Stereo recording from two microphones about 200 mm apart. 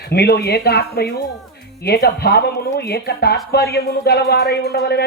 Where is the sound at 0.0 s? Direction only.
55° left (ahead or behind).